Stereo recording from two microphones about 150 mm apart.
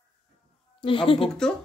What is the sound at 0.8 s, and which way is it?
Speech, 35° left (ahead or behind).